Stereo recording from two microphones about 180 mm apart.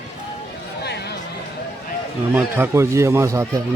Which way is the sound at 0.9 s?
65° left (ahead or behind).